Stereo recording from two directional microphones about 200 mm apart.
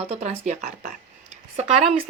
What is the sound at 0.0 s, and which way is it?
Speech, 30° right (ahead or behind).